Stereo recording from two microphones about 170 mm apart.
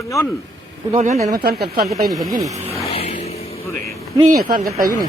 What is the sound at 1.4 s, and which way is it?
Speech, 65° right (ahead or behind).